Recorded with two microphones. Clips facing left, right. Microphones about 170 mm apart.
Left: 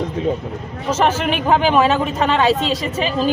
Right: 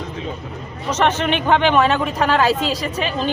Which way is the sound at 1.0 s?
5° left (ahead or behind).